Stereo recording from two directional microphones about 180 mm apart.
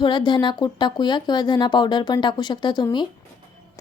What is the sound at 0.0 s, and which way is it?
Speech, 25° left (ahead or behind).